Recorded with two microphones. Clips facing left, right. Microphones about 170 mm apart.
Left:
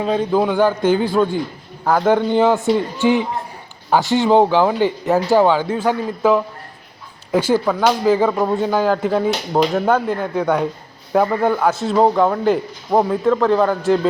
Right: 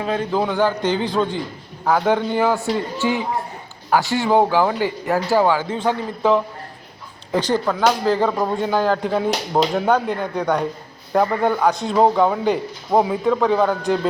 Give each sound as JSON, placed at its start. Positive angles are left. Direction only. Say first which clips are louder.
{"t": 0.1, "sound": "a man's voice", "louder": "left 4 dB", "side_deg": 15}
{"t": 2.3, "sound": "a man's voice", "louder": "left 4 dB", "side_deg": 20}